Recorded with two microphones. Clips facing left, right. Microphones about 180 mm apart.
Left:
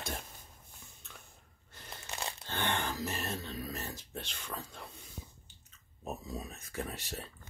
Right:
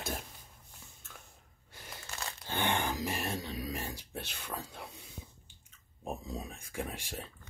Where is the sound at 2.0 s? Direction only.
20° left (ahead or behind).